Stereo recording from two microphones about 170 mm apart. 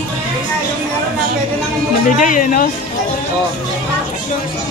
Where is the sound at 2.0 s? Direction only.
50° left (ahead or behind).